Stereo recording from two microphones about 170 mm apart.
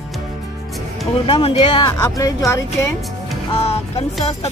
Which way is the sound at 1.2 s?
30° left (ahead or behind).